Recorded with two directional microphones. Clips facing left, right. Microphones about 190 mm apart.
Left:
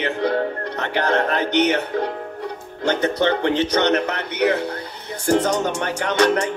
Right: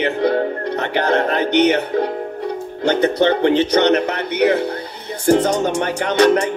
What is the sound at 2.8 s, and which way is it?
Speech, 15° right (ahead or behind).